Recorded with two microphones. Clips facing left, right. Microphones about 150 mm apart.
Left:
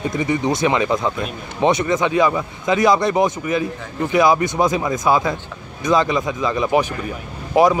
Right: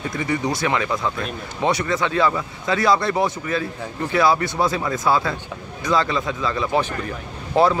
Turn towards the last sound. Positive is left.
turn(degrees=15)  # may be behind; listen again after turning